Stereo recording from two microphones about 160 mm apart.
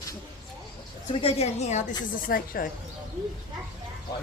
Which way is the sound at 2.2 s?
65° left (ahead or behind).